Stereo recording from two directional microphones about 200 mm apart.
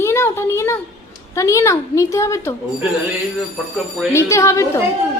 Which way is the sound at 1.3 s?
15° left (ahead or behind).